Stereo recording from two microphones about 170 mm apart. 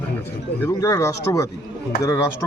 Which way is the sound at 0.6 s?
15° left (ahead or behind).